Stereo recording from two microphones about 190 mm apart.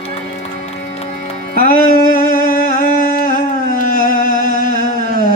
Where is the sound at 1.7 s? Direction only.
50° left (ahead or behind).